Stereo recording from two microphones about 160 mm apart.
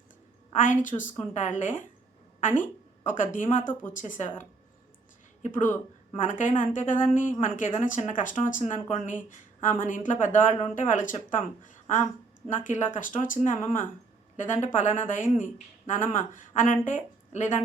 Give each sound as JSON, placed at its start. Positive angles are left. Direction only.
{"t": 0.6, "sound": "speech", "side_deg": 55}
{"t": 3.1, "sound": "speech", "side_deg": 55}